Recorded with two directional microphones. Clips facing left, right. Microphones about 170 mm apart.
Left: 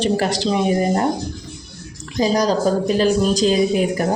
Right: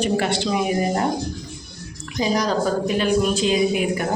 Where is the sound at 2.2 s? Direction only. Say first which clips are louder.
Left 4 dB; 35° left (ahead or behind).